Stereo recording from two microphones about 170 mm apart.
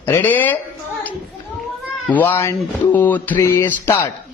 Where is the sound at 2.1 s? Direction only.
10° left (ahead or behind).